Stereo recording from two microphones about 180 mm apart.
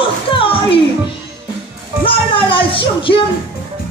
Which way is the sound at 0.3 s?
30° left (ahead or behind).